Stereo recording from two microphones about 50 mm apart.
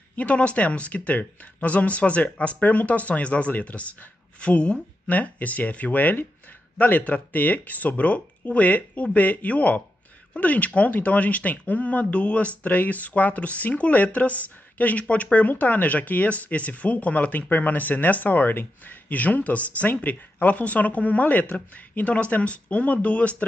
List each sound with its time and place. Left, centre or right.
0.1 s speech: left